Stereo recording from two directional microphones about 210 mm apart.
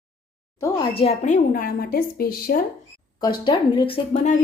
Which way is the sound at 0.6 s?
25° left (ahead or behind).